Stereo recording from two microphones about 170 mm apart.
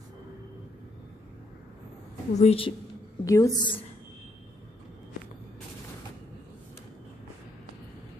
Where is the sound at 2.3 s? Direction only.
35° left (ahead or behind).